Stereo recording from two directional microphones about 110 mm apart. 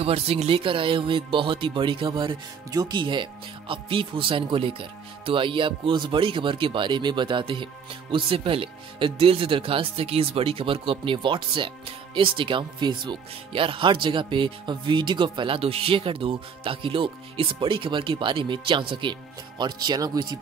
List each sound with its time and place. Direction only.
0.0 s speech: 65° right (ahead or behind); by 20.3 s 40° right (ahead or behind)